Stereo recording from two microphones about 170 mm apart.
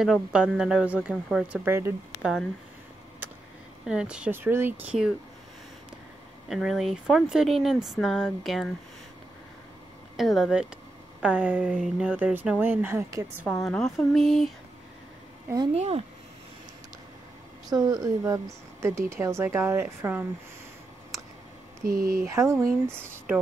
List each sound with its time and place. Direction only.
0.0 s speech: 5° right (ahead or behind)
3.8 s speech: 5° right (ahead or behind)
6.5 s speech: centre (ahead or behind)
10.1 s speech: centre (ahead or behind)
13.5 s speech: 5° left (ahead or behind)
15.7 s speech: 40° right (ahead or behind)
17.6 s speech: 20° right (ahead or behind)
21.8 s speech: 55° right (ahead or behind)
22.3 s speech: 20° right (ahead or behind)